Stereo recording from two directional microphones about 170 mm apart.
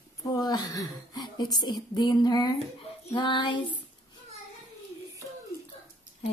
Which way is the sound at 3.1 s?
30° left (ahead or behind).